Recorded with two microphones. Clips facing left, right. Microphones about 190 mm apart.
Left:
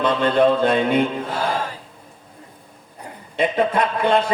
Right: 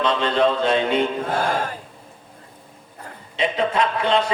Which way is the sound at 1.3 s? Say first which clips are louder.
Right 1 dB; 50° right (ahead or behind).